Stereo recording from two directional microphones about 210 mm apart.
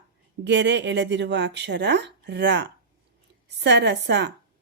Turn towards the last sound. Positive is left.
turn(degrees=-55)  # may be behind; listen again after turning